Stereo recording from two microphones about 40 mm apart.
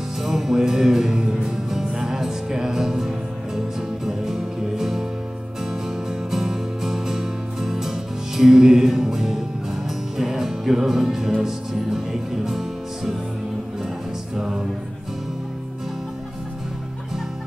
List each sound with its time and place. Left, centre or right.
0.2 s music: centre
1.2 s music: right
1.7 s music: centre
14.3 s music: centre